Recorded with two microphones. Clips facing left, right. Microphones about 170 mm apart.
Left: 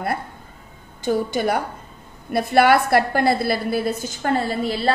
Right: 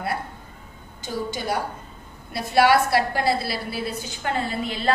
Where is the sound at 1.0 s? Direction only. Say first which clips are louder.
Left 7 dB; 55° left (ahead or behind).